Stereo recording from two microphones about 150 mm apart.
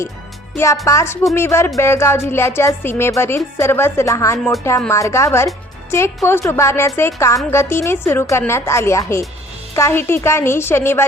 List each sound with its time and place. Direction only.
0.5 s speech: 20° left (ahead or behind)